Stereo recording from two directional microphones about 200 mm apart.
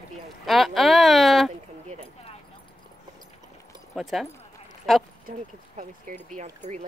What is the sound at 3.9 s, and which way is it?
Speech, centre (ahead or behind).